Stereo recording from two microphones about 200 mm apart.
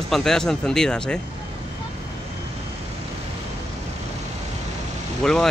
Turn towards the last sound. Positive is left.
turn(degrees=0)  # may be behind; listen again after turning